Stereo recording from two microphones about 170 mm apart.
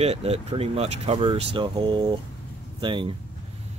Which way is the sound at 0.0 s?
40° right (ahead or behind).